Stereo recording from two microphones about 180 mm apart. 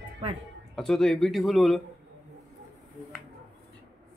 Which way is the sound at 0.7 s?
Centre (ahead or behind).